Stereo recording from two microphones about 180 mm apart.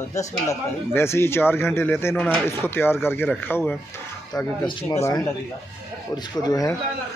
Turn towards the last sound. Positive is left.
turn(degrees=20)  # may be behind; listen again after turning